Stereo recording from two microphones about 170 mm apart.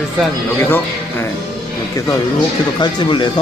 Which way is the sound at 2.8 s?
25° left (ahead or behind).